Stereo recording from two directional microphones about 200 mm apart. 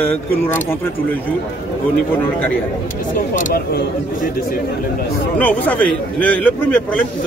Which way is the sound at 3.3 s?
45° left (ahead or behind).